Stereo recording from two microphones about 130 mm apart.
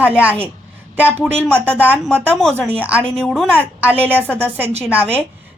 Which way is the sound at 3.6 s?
15° right (ahead or behind).